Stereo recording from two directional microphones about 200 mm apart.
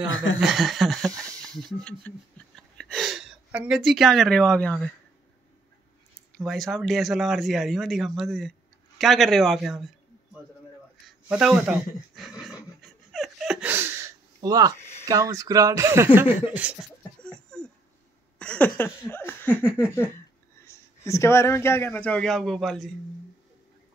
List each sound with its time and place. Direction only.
0.1 s speech: 70° left (ahead or behind)
0.4 s a sound: centre (ahead or behind)
6.3 s speech: centre (ahead or behind)
11.1 s speech: 5° right (ahead or behind)
12.2 s dog: centre (ahead or behind); by 14.8 s 20° right (ahead or behind)
15.0 s speech: 15° right (ahead or behind)
17.2 s a sound: 5° left (ahead or behind)
20.6 s speech: 15° left (ahead or behind)